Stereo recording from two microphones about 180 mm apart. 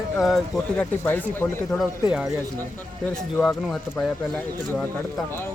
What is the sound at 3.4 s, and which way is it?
Speech, 5° left (ahead or behind).